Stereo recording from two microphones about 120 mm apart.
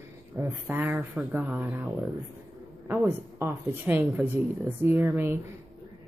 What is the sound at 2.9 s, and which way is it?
A woman's voice, 20° right (ahead or behind).